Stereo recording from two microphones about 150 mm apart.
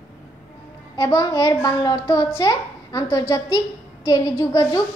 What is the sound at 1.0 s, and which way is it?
A woman's voice, 25° left (ahead or behind).